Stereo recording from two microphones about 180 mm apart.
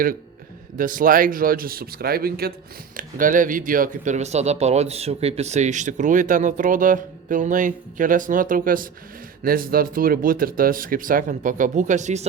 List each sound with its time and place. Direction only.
0.8 s speech: 50° right (ahead or behind)